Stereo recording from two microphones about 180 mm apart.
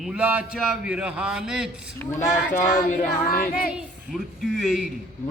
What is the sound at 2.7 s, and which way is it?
Speech, 45° left (ahead or behind).